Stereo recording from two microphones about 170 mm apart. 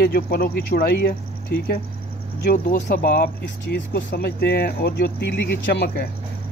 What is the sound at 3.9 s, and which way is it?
Speech, 80° left.